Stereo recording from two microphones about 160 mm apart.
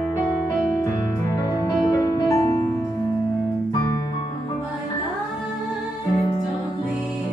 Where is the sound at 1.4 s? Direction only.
25° left (ahead or behind).